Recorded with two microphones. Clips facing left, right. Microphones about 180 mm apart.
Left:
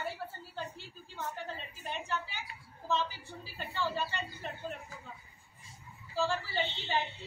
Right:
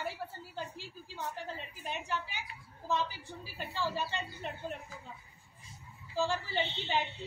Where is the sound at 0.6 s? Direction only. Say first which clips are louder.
Even; 15° right (ahead or behind).